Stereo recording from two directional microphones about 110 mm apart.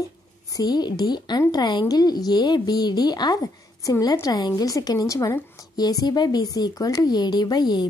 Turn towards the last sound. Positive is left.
turn(degrees=40)  # may be behind; listen again after turning